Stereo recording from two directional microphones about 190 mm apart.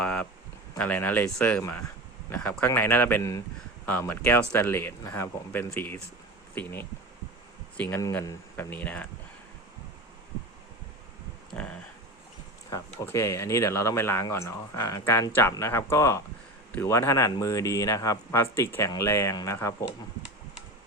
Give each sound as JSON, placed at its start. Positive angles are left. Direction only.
{"t": 0.0, "sound": "speech", "side_deg": 5}
{"t": 11.5, "sound": "a sound", "side_deg": 5}
{"t": 12.7, "sound": "speech", "side_deg": 15}